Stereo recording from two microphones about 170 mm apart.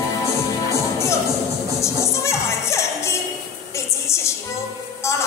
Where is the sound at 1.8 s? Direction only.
15° left (ahead or behind).